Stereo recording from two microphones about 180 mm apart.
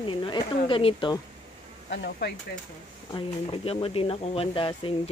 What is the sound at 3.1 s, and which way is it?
Speech, 25° left (ahead or behind).